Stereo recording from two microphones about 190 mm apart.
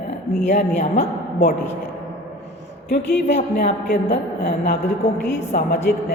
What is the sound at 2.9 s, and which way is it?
Speech, 60° left (ahead or behind).